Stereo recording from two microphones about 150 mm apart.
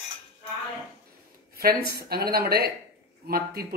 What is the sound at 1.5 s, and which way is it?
A man's voice, 85° right.